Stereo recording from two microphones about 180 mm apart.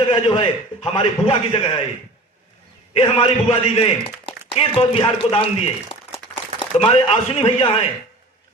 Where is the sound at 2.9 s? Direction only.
35° left (ahead or behind).